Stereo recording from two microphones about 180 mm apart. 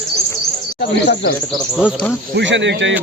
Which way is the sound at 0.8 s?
75° left (ahead or behind).